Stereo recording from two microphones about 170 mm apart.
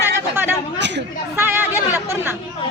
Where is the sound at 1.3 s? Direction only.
15° right (ahead or behind).